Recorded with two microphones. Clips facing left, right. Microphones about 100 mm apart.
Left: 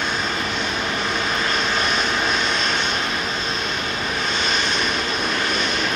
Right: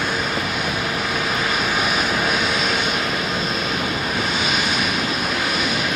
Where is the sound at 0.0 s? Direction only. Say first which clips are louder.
Right 1 dB; 5° right (ahead or behind).